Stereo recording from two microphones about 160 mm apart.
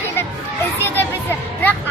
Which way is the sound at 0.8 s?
15° left (ahead or behind).